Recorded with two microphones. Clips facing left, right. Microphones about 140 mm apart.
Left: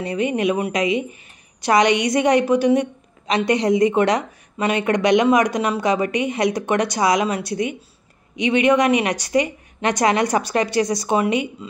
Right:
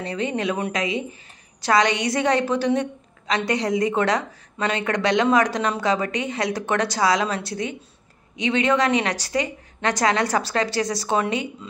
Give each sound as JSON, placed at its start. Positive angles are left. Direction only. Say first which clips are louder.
{"t": 0.0, "sound": "a woman's voice", "louder": "left 5 dB", "side_deg": 15}